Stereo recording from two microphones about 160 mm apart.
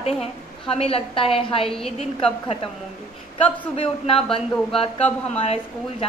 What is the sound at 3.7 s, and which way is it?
A woman's voice, 35° left (ahead or behind).